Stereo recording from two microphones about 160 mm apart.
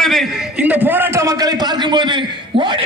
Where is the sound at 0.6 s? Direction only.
10° right (ahead or behind).